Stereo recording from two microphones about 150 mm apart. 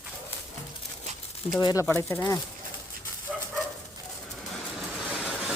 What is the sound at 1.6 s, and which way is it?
Speech, 20° left (ahead or behind).